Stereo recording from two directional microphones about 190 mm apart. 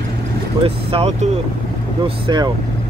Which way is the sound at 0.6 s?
30° right (ahead or behind).